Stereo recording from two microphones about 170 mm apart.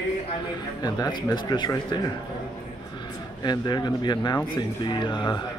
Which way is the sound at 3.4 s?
25° left (ahead or behind).